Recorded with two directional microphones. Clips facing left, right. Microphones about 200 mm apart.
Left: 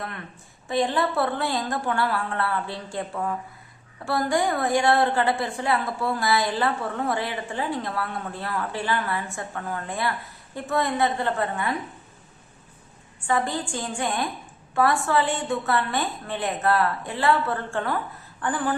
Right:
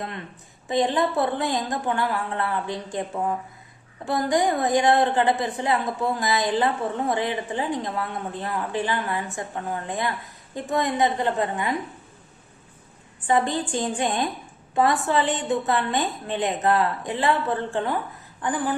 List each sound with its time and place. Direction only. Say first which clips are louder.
0.7 s a woman's voice: right 2 dB; 20° right (ahead or behind)
13.1 s a woman's voice: right 3 dB; 20° right (ahead or behind)